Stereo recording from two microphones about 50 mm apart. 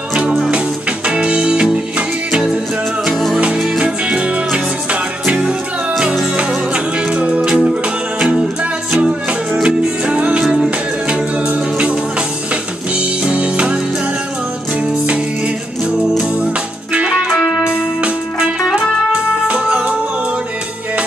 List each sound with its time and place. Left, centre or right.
0.1 s music: centre
3.5 s music: centre
13.2 s music: right
16.9 s music: right
17.4 s music: centre
17.6 s music: centre